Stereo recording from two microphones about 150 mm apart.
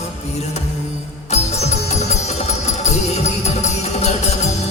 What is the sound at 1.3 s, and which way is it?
Music, 45° left (ahead or behind).